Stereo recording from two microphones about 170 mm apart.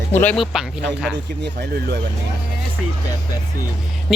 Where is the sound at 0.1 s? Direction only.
10° left (ahead or behind).